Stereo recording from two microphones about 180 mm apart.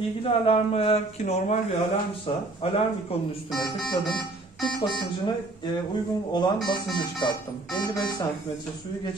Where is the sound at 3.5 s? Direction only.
Centre (ahead or behind).